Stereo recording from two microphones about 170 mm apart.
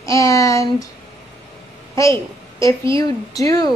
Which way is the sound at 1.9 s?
15° left (ahead or behind).